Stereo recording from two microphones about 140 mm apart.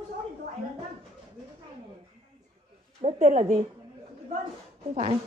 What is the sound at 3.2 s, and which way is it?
Speech, 70° right (ahead or behind).